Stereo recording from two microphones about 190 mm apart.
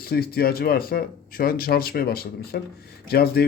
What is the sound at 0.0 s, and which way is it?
Speech, 55° left (ahead or behind).